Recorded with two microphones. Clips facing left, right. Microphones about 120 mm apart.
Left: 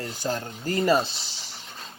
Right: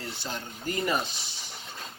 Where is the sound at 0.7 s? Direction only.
30° left (ahead or behind).